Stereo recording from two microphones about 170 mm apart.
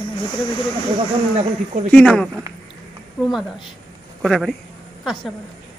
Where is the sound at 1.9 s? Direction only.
5° left (ahead or behind).